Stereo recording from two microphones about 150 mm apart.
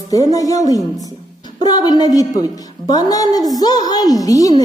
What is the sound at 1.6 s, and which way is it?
A woman's voice, 25° left (ahead or behind).